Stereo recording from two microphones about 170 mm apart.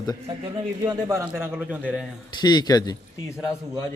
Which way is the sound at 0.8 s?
15° right (ahead or behind).